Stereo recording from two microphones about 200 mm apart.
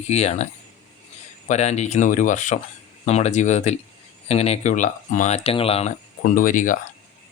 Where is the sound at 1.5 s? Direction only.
35° left (ahead or behind).